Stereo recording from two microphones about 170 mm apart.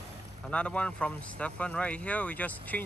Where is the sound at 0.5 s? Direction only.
5° left (ahead or behind).